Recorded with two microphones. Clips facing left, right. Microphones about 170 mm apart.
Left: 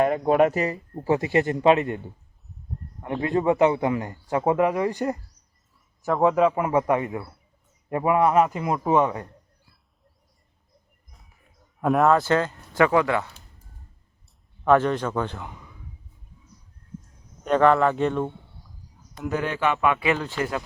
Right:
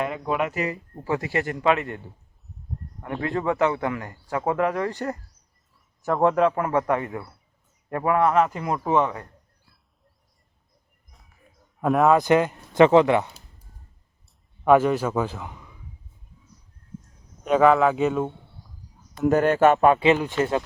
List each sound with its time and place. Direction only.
0.0 s a man's voice: 45° left (ahead or behind); by 2.0 s 20° left (ahead or behind)
3.0 s a man's voice: 20° left (ahead or behind)
6.1 s a man's voice: centre (ahead or behind)
11.1 s a sound: centre (ahead or behind)
12.1 s speech: 15° right (ahead or behind)
14.6 s a man's voice: 10° right (ahead or behind)
17.4 s speech: 5° right (ahead or behind)
19.2 s speech: 50° right (ahead or behind)
20.0 s speech: 20° right (ahead or behind)